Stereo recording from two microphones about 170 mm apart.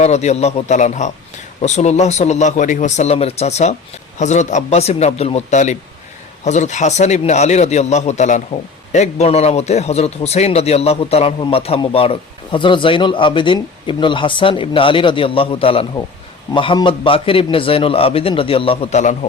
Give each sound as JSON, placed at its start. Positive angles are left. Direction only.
{"t": 0.0, "sound": "a man's voice", "side_deg": 40}